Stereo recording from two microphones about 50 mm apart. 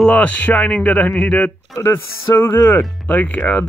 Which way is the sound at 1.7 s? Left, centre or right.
Left.